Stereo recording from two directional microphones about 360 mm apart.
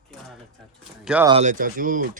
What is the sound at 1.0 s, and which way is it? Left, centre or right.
Speech, centre.